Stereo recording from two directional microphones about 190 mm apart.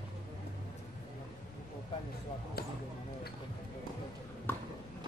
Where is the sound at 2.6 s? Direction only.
55° left (ahead or behind).